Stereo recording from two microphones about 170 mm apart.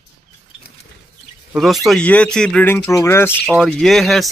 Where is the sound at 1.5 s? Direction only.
Centre (ahead or behind).